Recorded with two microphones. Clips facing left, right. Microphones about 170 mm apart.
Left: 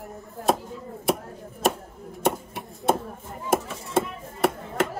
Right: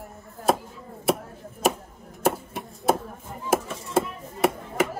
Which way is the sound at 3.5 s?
Centre (ahead or behind).